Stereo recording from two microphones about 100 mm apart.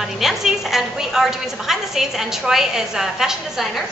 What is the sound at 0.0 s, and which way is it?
A woman's voice, 5° right (ahead or behind).